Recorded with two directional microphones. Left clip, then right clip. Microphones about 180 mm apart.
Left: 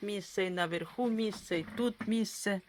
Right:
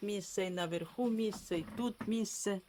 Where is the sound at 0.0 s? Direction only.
5° left (ahead or behind).